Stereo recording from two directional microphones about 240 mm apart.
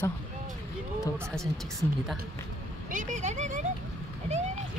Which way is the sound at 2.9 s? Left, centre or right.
Right.